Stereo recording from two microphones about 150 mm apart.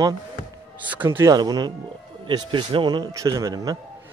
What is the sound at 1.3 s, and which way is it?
A man's voice, 25° right (ahead or behind).